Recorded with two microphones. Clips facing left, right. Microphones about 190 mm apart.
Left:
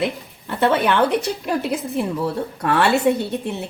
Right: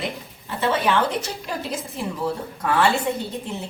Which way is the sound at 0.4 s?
60° left (ahead or behind).